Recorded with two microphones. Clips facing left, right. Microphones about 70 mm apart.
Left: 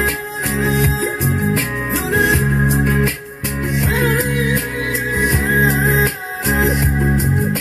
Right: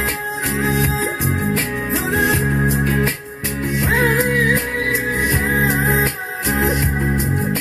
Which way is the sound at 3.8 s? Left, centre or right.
Right.